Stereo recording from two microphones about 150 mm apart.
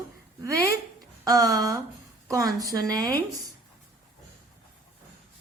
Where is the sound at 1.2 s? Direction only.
25° right (ahead or behind).